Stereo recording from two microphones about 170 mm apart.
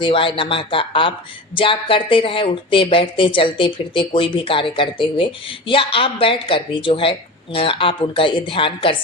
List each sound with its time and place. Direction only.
0.0 s speech: 30° left (ahead or behind)